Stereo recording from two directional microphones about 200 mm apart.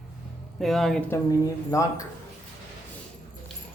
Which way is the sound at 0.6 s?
Centre (ahead or behind).